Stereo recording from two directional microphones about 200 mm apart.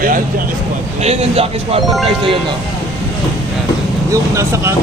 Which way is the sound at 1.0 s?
30° right (ahead or behind).